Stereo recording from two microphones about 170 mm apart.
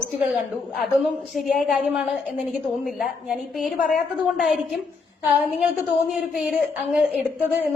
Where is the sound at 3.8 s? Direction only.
55° left (ahead or behind).